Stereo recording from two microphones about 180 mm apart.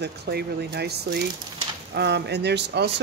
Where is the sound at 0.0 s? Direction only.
65° right (ahead or behind).